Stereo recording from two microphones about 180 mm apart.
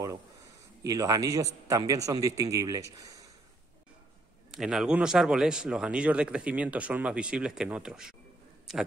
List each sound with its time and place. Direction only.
0.8 s a man's voice: 20° right (ahead or behind)
4.5 s speech: centre (ahead or behind)